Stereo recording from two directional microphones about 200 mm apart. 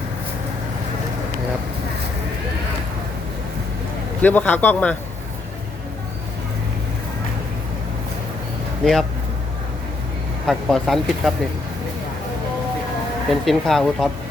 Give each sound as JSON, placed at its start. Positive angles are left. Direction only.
{"t": 4.2, "sound": "speech", "side_deg": 10}
{"t": 8.8, "sound": "speech", "side_deg": 0}
{"t": 10.4, "sound": "speech", "side_deg": 0}
{"t": 13.4, "sound": "speech", "side_deg": 0}